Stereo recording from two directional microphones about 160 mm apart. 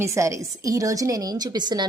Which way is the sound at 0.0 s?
20° right (ahead or behind).